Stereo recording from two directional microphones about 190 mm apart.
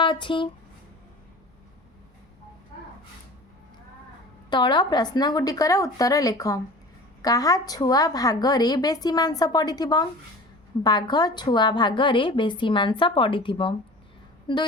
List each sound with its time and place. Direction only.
0.0 s speech: 25° left (ahead or behind)
4.4 s a woman's voice: 25° left (ahead or behind)